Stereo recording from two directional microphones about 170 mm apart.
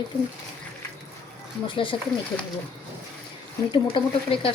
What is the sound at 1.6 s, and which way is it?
Speech, 30° left (ahead or behind).